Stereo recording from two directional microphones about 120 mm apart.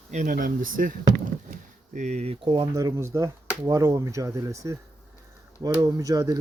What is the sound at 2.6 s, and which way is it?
Speech, 25° right (ahead or behind).